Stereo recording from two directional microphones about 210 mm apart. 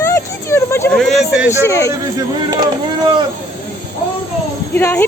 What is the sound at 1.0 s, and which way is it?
Speech, centre (ahead or behind).